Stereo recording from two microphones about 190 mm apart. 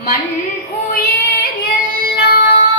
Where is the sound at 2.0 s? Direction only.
50° left (ahead or behind).